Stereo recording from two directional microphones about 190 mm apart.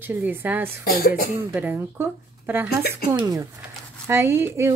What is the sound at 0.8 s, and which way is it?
Speech, 50° left (ahead or behind).